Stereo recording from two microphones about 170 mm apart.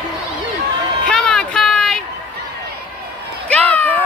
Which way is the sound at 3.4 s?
10° left (ahead or behind).